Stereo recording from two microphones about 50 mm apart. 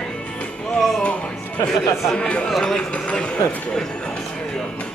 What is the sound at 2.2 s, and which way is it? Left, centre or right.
Speech, left.